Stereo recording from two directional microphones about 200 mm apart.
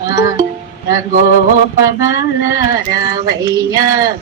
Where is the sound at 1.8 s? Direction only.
65° left (ahead or behind).